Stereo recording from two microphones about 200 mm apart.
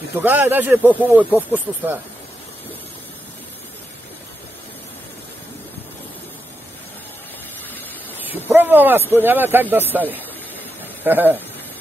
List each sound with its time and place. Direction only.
0.2 s speech: 10° right (ahead or behind)
8.5 s speech: 10° right (ahead or behind)